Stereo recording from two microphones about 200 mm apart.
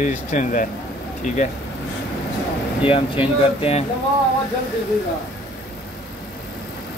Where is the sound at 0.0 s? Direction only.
40° left (ahead or behind).